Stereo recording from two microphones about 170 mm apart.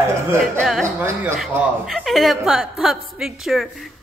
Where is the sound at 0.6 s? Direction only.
Centre (ahead or behind).